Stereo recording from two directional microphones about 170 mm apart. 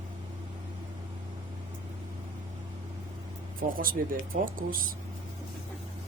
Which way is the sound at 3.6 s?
55° right (ahead or behind).